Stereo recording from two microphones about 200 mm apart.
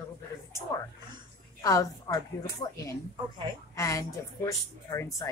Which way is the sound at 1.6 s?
15° left (ahead or behind).